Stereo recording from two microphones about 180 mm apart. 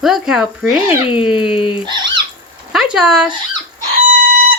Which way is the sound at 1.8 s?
25° right (ahead or behind).